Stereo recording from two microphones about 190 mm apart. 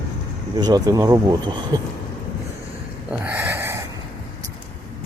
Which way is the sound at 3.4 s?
10° right (ahead or behind).